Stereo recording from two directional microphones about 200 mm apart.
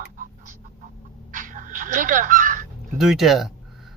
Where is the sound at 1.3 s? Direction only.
40° right (ahead or behind).